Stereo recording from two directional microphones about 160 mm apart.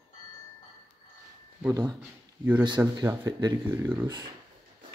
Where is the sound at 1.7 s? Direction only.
20° right (ahead or behind).